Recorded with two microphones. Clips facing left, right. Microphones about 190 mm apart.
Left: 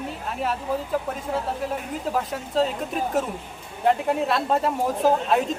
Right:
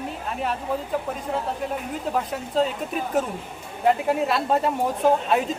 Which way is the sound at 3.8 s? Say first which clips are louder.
Right 1 dB; centre (ahead or behind).